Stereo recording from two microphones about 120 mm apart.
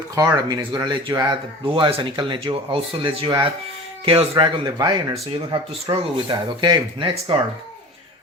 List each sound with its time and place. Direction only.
0.4 s speech: 30° right (ahead or behind)
1.6 s speech: 45° right (ahead or behind)